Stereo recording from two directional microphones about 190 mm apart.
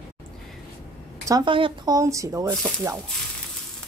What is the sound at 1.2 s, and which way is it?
Speech, 25° right (ahead or behind).